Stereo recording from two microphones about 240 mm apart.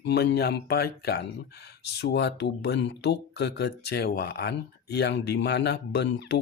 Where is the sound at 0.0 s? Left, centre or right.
Left.